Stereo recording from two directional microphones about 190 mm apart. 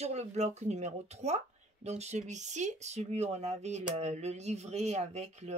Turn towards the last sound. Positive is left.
turn(degrees=-35)  # may be behind; listen again after turning